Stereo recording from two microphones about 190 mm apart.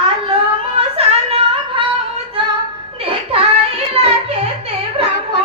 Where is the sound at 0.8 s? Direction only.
30° right (ahead or behind).